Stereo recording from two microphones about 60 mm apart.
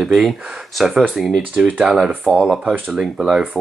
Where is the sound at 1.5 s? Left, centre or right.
Right.